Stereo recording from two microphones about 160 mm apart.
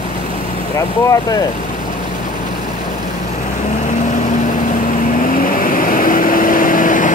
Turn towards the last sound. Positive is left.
turn(degrees=55)  # may be behind; listen again after turning